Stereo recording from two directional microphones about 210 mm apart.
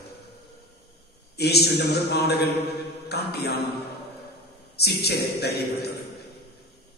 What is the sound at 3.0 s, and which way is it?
Music, 50° left (ahead or behind).